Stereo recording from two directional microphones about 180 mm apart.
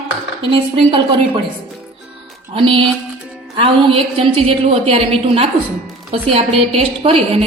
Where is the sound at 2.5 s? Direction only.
30° right (ahead or behind).